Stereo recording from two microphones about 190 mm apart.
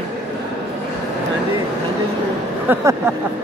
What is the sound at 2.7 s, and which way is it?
Speech, 15° right (ahead or behind).